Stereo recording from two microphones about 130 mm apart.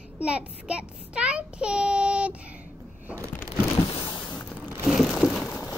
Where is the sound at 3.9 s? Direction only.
35° left (ahead or behind).